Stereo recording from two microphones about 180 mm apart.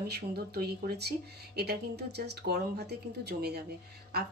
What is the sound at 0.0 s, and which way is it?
A woman's voice, 60° right (ahead or behind).